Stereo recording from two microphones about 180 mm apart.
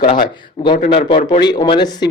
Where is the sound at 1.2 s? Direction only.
25° left (ahead or behind).